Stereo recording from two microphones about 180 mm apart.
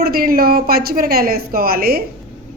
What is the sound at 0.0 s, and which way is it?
A woman's voice, 55° right (ahead or behind).